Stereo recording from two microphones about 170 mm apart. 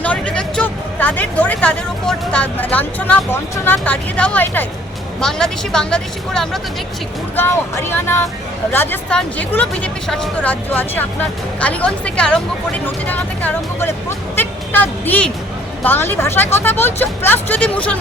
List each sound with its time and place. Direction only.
0.0 s speech: 5° left (ahead or behind)
7.3 s speech: 15° left (ahead or behind)